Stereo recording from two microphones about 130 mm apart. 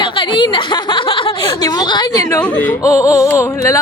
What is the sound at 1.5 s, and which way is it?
Speech, 30° left (ahead or behind).